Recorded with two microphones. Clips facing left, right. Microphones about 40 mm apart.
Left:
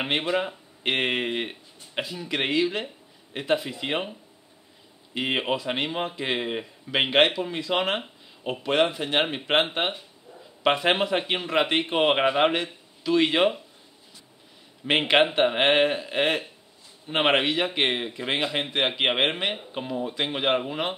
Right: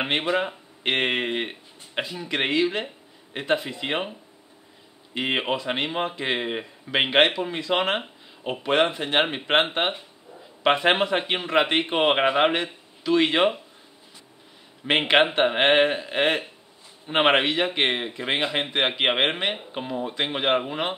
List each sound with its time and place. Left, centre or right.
0.0 s speech: centre
14.9 s a man's voice: centre